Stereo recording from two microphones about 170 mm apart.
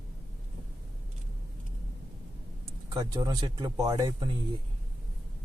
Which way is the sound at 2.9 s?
20° right (ahead or behind).